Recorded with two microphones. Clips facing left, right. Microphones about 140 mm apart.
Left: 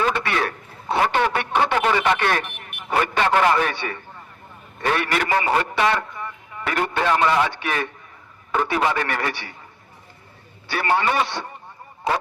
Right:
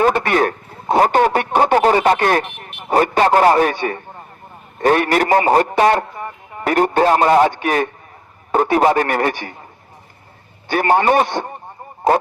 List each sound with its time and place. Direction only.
0.0 s a man's voice: 45° right (ahead or behind)
10.7 s a man's voice: 45° right (ahead or behind)